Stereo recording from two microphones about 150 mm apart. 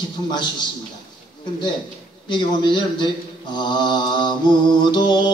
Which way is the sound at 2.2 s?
30° left (ahead or behind).